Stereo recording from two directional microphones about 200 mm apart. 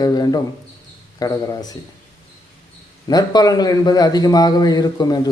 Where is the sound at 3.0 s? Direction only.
20° left (ahead or behind).